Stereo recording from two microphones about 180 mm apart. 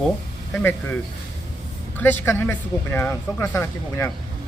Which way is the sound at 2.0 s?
10° left (ahead or behind).